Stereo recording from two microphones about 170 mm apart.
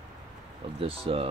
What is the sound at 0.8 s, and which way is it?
Speech, 35° right (ahead or behind).